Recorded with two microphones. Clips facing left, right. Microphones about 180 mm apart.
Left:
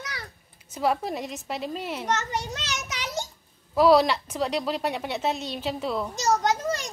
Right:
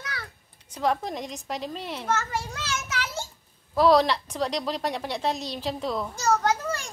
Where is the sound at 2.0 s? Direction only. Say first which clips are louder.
Right 1 dB; 20° left (ahead or behind).